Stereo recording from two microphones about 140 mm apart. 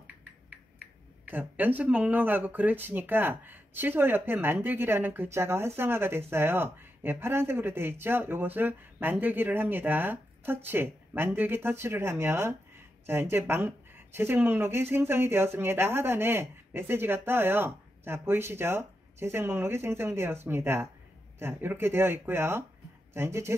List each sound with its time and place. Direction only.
1.2 s speech: 15° right (ahead or behind)